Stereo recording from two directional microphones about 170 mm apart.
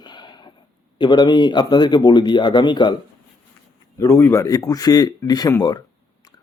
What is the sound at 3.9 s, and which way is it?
Speech, 15° left (ahead or behind).